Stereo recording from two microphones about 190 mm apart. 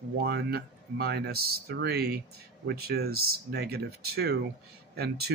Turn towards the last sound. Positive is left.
turn(degrees=-55)  # may be behind; listen again after turning